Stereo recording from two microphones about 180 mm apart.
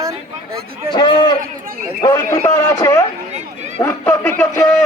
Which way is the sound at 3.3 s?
40° right (ahead or behind).